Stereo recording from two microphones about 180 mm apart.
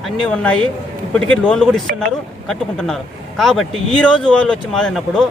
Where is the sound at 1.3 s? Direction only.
5° left (ahead or behind).